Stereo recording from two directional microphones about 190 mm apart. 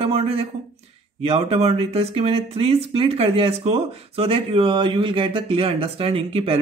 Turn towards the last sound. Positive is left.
turn(degrees=-30)  # may be behind; listen again after turning